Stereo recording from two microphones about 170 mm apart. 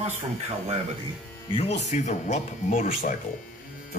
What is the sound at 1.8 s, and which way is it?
Speech, 45° left (ahead or behind).